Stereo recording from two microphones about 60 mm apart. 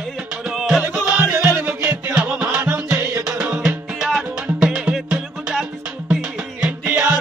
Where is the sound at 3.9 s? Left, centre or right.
Centre.